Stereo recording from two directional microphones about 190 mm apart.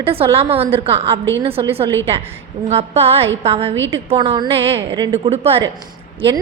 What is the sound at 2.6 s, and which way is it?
A woman's voice, 35° right (ahead or behind).